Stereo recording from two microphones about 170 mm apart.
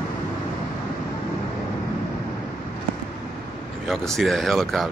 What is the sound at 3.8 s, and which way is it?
Speech, centre (ahead or behind).